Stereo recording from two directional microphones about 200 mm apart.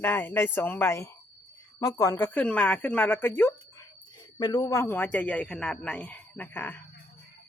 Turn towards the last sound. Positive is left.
turn(degrees=10)  # may be behind; listen again after turning